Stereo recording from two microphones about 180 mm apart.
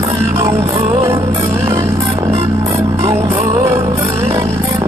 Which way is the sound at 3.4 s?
40° right (ahead or behind).